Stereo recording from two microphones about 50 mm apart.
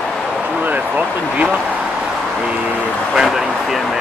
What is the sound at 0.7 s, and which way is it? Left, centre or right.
Speech, right.